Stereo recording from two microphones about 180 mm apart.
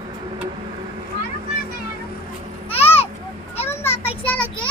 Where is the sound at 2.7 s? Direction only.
35° left (ahead or behind).